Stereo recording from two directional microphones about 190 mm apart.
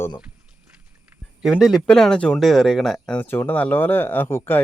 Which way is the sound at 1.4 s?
5° right (ahead or behind).